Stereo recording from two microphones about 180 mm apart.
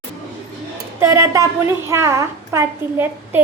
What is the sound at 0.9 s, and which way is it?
A child's voice, 15° right (ahead or behind).